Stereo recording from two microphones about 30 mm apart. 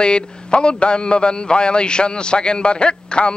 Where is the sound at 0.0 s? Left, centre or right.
Left.